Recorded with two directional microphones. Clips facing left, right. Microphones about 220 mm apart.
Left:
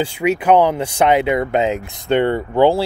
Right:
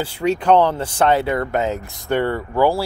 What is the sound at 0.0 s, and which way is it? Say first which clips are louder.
Speech: left 2 dB; 10° left (ahead or behind).